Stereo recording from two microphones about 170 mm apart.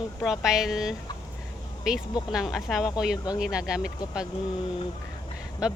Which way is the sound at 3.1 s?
25° left (ahead or behind).